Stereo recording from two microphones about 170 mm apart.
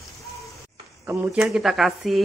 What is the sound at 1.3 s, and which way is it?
Speech, 5° right (ahead or behind).